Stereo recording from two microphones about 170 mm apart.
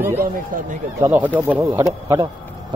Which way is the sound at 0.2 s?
50° right (ahead or behind).